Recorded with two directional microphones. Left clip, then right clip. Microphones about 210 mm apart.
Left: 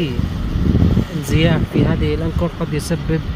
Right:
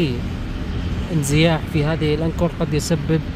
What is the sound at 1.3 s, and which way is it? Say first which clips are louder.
Speech: left 1 dB; 10° right (ahead or behind).